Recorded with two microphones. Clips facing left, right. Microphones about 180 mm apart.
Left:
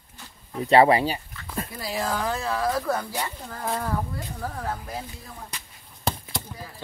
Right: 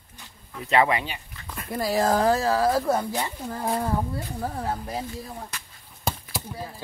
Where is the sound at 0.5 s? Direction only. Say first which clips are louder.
Left 5 dB; 35° left (ahead or behind).